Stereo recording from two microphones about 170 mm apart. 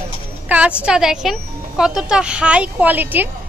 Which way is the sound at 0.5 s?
5° right (ahead or behind).